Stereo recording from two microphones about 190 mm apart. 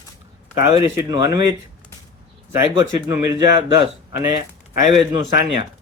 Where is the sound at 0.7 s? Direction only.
15° right (ahead or behind).